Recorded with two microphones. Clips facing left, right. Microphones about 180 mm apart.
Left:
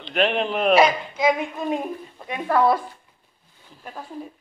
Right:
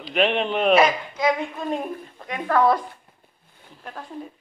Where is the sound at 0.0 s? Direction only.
Centre (ahead or behind).